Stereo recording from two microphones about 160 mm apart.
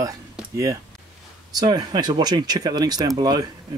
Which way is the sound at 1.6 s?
25° right (ahead or behind).